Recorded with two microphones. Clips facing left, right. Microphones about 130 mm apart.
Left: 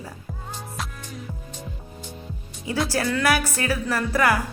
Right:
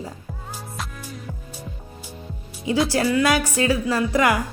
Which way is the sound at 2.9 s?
15° right (ahead or behind).